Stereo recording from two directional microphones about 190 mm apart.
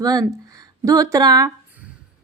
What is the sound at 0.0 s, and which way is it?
Speech, 20° right (ahead or behind).